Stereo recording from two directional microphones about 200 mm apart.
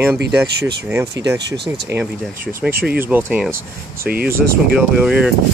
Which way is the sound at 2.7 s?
50° right (ahead or behind).